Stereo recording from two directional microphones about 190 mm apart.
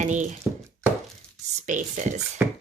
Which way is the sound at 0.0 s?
40° right (ahead or behind).